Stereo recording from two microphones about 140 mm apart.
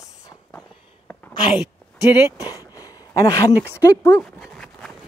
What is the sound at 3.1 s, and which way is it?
Speech, 25° left (ahead or behind).